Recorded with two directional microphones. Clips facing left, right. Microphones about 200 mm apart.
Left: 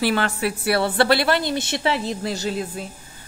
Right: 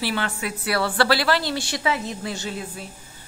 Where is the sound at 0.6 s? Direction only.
25° left (ahead or behind).